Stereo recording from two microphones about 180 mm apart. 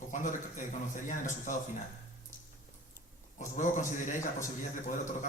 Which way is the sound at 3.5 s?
45° left (ahead or behind).